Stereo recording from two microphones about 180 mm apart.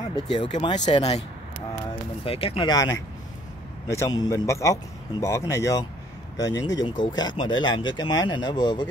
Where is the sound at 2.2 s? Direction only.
30° left (ahead or behind).